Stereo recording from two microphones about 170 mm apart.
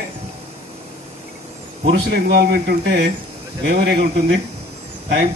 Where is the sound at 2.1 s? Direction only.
75° right (ahead or behind).